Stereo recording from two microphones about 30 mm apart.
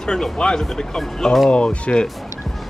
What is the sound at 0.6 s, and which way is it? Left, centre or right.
Speech, centre.